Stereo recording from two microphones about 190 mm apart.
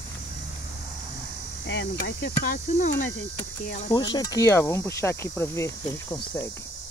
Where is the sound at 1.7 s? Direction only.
65° left (ahead or behind).